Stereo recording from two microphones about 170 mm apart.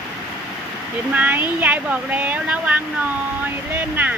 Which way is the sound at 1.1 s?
10° right (ahead or behind).